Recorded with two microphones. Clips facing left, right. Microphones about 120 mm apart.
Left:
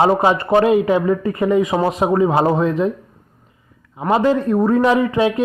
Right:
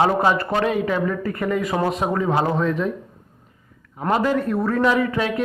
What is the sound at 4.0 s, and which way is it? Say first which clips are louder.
Speech: left 4 dB; 5° left (ahead or behind).